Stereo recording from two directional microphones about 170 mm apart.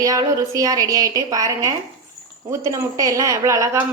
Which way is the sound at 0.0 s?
20° right (ahead or behind).